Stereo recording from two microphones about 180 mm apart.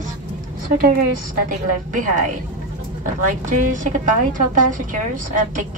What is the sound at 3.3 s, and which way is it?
A woman's voice, 45° right (ahead or behind).